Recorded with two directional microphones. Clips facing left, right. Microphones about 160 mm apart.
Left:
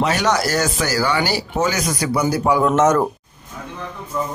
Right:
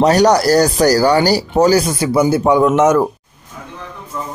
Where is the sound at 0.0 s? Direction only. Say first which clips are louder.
Right 8 dB; 40° right (ahead or behind).